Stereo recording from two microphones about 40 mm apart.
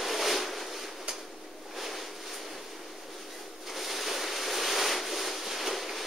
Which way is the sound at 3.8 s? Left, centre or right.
Centre.